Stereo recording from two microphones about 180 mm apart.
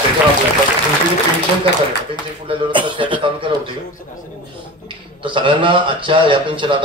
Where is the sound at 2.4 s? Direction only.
25° right (ahead or behind).